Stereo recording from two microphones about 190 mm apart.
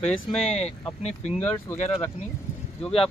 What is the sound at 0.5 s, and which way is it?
Speech, 35° left (ahead or behind).